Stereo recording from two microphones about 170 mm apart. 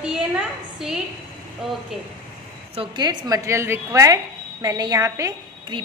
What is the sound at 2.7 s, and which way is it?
A woman's voice, 30° right (ahead or behind).